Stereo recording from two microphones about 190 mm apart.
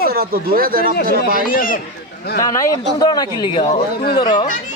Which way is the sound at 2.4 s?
20° left (ahead or behind).